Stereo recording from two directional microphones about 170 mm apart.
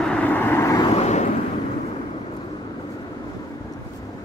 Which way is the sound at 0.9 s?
40° left (ahead or behind).